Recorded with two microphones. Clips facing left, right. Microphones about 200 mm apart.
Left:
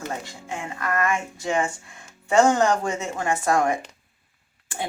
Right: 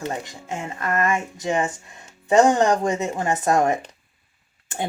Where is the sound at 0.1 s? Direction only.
20° right (ahead or behind).